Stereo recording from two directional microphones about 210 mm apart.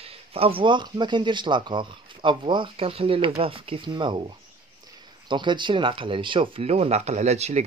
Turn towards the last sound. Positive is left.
turn(degrees=-30)  # may be behind; listen again after turning